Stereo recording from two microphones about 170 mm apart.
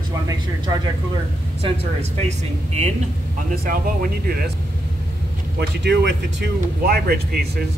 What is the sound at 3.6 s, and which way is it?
Speech, 55° right (ahead or behind).